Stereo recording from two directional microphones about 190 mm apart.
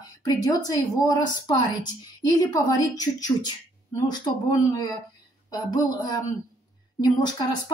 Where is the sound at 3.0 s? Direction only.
20° left (ahead or behind).